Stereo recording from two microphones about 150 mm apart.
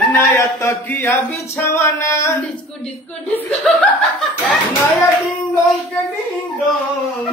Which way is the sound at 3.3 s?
5° left (ahead or behind).